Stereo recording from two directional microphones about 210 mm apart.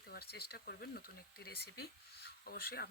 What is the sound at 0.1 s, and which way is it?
Speech, 50° left (ahead or behind).